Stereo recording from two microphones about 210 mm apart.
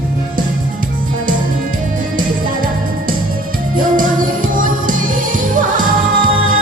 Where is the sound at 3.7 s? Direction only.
40° right (ahead or behind).